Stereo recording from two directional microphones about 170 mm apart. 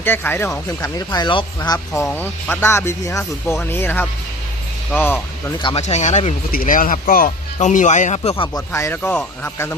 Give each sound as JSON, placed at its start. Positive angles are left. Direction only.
{"t": 0.0, "sound": "speech", "side_deg": 10}
{"t": 2.0, "sound": "speech", "side_deg": 10}
{"t": 5.6, "sound": "speech", "side_deg": 40}
{"t": 8.5, "sound": "speech", "side_deg": 15}